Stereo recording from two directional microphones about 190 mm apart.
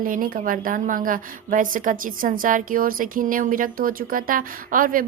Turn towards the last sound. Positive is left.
turn(degrees=-45)  # may be behind; listen again after turning